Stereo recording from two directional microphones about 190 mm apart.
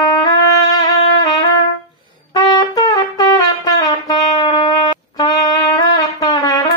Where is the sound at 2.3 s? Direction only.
20° left (ahead or behind).